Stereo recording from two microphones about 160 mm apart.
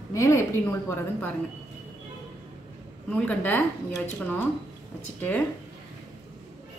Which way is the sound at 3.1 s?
10° left (ahead or behind).